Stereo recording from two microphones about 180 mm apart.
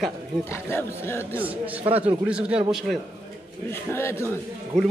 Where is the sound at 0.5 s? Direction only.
10° left (ahead or behind).